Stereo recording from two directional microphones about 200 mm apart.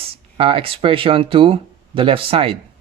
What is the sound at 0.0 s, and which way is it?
Speech, 30° right (ahead or behind).